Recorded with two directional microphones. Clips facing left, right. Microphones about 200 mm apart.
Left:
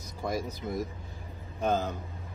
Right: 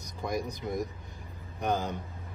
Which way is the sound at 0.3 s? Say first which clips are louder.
Even; 15° right (ahead or behind).